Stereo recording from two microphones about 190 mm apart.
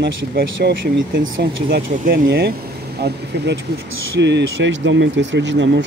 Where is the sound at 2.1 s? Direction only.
55° right (ahead or behind).